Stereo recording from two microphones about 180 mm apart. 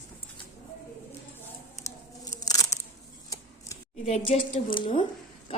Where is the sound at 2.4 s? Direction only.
20° left (ahead or behind).